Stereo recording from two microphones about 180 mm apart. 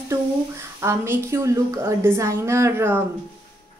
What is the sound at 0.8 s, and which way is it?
A woman's voice, 15° right (ahead or behind).